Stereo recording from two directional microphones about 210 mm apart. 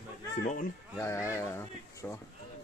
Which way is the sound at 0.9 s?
10° left (ahead or behind).